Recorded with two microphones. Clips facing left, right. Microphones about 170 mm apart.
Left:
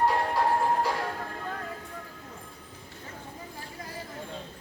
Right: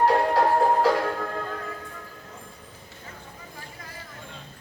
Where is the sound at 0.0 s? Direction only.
75° right (ahead or behind).